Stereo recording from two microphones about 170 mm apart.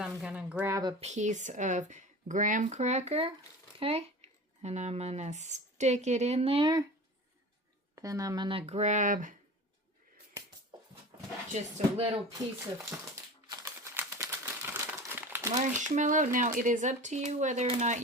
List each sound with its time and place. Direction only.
0.0 s speech: 5° right (ahead or behind)
0.7 s speech: 25° right (ahead or behind)
1.0 s speech: 45° right (ahead or behind); by 6.8 s 30° right (ahead or behind)
7.9 s speech: 20° right (ahead or behind); by 9.3 s 50° right (ahead or behind)
11.5 s speech: 35° right (ahead or behind)
13.5 s crumpling: 20° right (ahead or behind)
15.5 s speech: 45° right (ahead or behind)